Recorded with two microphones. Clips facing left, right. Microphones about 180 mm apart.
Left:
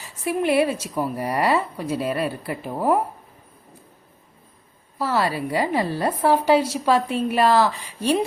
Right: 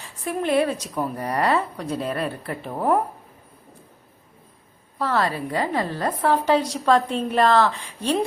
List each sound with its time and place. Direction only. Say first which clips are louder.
0.3 s a woman's voice: left 2 dB; 10° left (ahead or behind)
4.9 s a woman's voice: left 1 dB; 10° left (ahead or behind)